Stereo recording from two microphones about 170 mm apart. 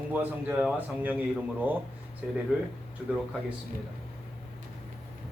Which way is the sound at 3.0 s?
5° right (ahead or behind).